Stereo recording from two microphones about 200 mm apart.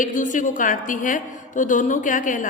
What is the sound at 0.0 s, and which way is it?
A woman's voice, 40° left (ahead or behind).